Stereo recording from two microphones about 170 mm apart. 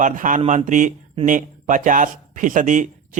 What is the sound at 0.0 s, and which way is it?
Speech, 50° right (ahead or behind).